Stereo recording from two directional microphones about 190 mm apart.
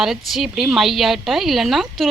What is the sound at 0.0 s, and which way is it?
Speech, centre (ahead or behind).